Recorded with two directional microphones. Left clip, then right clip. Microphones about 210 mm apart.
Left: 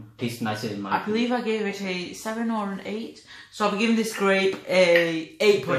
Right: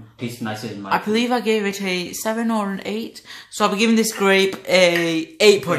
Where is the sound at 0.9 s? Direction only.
50° right (ahead or behind).